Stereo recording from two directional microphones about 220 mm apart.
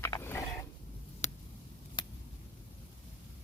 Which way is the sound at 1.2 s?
30° left (ahead or behind).